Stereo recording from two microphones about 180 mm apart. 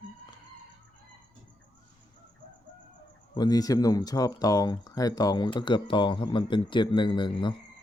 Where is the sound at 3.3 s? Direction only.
20° left (ahead or behind).